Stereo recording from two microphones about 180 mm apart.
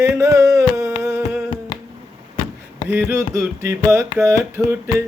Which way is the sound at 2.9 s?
10° right (ahead or behind).